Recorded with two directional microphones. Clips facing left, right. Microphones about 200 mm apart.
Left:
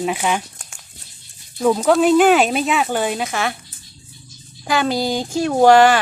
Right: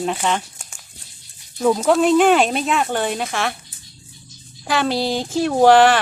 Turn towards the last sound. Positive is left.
turn(degrees=0)  # may be behind; listen again after turning